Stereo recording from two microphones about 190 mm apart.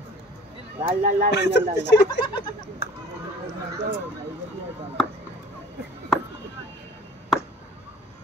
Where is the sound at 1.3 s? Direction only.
65° left (ahead or behind).